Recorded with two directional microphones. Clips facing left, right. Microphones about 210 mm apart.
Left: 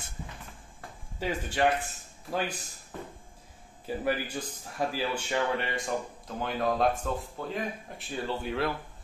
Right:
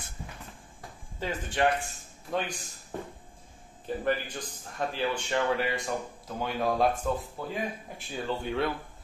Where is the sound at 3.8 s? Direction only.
10° left (ahead or behind).